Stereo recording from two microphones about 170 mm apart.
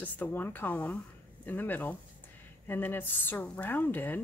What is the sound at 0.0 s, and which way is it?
Speech, 10° left (ahead or behind).